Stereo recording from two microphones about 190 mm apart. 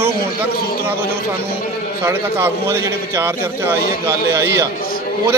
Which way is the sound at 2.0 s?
15° right (ahead or behind).